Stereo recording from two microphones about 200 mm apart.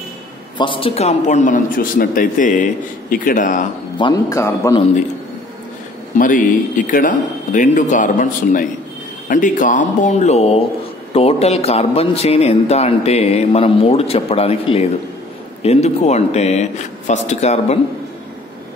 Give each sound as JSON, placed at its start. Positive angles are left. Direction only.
{"t": 0.6, "sound": "speech", "side_deg": 25}
{"t": 4.0, "sound": "a man's voice", "side_deg": 15}
{"t": 6.1, "sound": "a man's voice", "side_deg": 40}